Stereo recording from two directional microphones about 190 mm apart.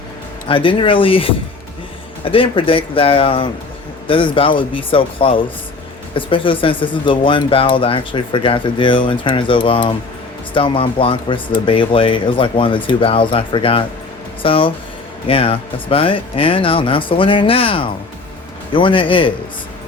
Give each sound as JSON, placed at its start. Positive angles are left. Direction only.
{"t": 0.4, "sound": "speech", "side_deg": 25}